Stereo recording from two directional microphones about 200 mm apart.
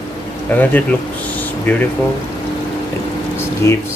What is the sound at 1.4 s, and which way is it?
Air conditioning, 10° left (ahead or behind).